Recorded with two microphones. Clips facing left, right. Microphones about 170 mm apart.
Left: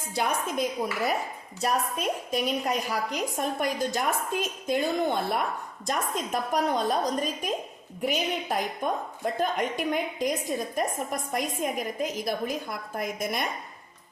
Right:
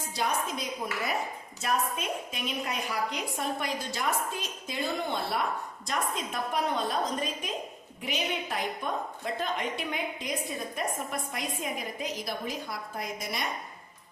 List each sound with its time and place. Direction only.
0.1 s a woman's voice: 55° left (ahead or behind)